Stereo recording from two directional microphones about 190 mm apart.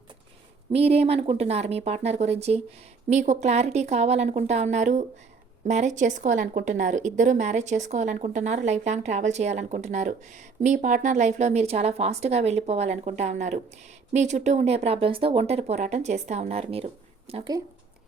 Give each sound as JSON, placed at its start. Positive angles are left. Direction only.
{"t": 0.7, "sound": "a woman's voice", "side_deg": -30}